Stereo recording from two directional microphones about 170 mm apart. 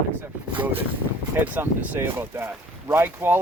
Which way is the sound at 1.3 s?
10° right (ahead or behind).